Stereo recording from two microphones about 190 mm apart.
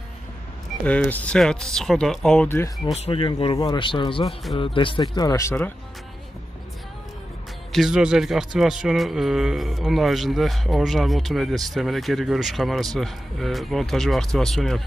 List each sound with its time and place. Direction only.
0.8 s a man's voice: 5° left (ahead or behind)
2.9 s speech: 30° left (ahead or behind)
7.7 s a man's voice: centre (ahead or behind)